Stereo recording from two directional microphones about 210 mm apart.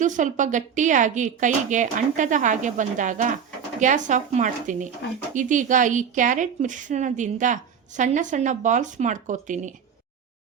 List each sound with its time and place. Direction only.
0.0 s a woman's voice: 35° right (ahead or behind)